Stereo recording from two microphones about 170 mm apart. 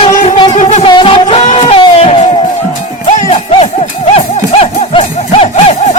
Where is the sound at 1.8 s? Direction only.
35° left (ahead or behind).